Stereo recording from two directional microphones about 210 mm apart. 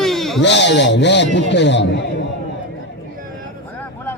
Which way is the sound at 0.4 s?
55° left (ahead or behind).